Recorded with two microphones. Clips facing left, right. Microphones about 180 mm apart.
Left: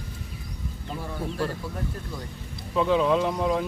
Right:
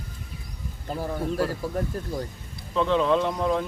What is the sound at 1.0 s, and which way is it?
Speech, 40° right (ahead or behind).